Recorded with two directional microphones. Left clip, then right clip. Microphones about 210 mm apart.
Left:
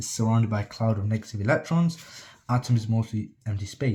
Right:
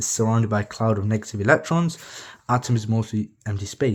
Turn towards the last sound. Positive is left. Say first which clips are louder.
# right 7 dB
turn(degrees=-45)  # may be behind; listen again after turning